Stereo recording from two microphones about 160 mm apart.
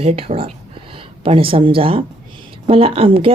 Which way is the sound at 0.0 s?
40° right (ahead or behind).